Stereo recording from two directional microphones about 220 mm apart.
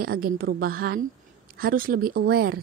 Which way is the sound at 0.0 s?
45° right (ahead or behind).